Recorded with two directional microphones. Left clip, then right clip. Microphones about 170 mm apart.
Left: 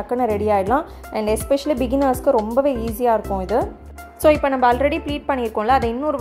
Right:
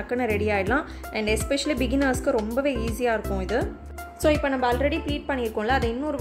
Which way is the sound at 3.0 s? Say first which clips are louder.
Left 7 dB; 15° left (ahead or behind).